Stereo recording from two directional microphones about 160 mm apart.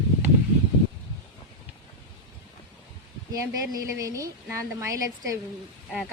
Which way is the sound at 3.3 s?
20° right (ahead or behind).